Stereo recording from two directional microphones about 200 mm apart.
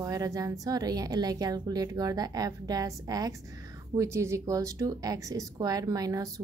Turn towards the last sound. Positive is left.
turn(degrees=-20)  # may be behind; listen again after turning